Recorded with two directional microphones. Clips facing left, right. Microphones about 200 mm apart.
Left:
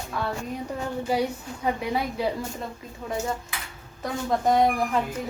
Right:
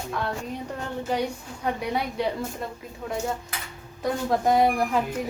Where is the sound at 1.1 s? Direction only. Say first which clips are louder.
Left 1 dB; 10° left (ahead or behind).